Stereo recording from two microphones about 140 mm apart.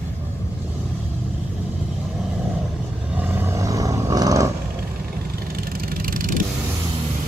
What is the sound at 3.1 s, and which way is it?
Roar, 15° right (ahead or behind).